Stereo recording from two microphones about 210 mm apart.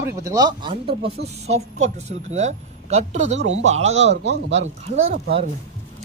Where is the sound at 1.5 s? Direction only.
30° right (ahead or behind).